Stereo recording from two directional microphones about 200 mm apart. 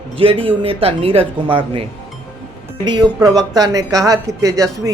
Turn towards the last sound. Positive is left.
turn(degrees=-15)  # may be behind; listen again after turning